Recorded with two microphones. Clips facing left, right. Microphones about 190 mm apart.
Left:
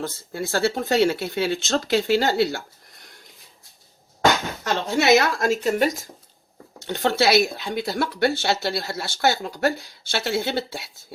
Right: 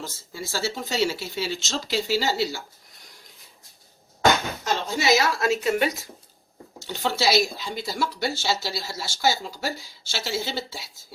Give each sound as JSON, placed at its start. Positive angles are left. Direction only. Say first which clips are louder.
{"t": 0.2, "sound": "speech", "louder": "left 7 dB", "side_deg": 60}
{"t": 2.4, "sound": "a sound", "louder": "left 5 dB", "side_deg": 55}
{"t": 4.6, "sound": "speech", "louder": "left 6 dB", "side_deg": 65}
{"t": 6.8, "sound": "speech", "louder": "left 4 dB", "side_deg": 55}